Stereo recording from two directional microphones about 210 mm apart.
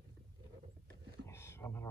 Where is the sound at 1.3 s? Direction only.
10° left (ahead or behind).